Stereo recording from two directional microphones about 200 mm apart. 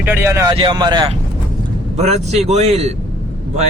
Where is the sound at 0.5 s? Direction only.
20° right (ahead or behind).